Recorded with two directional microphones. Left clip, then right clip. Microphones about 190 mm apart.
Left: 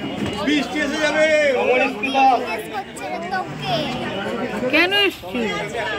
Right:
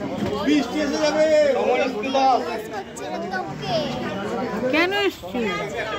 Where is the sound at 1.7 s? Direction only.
10° right (ahead or behind).